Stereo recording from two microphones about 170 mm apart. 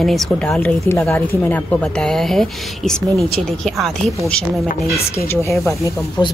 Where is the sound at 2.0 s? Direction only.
Centre (ahead or behind).